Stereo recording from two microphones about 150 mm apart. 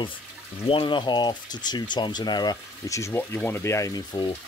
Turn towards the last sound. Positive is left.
turn(degrees=30)  # may be behind; listen again after turning